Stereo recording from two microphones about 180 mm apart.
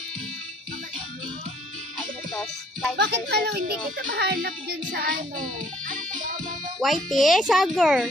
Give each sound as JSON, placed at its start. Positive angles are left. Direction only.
{"t": 2.0, "sound": "music", "side_deg": 5}
{"t": 3.0, "sound": "a child's voice", "side_deg": -65}
{"t": 6.8, "sound": "a child's voice", "side_deg": 0}